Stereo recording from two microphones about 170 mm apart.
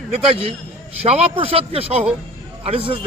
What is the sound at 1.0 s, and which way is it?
A man's voice, 35° right (ahead or behind).